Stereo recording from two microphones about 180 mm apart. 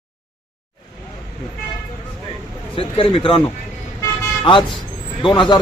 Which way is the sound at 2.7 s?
30° left (ahead or behind).